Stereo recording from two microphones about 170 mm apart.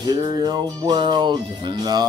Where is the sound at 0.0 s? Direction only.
25° right (ahead or behind).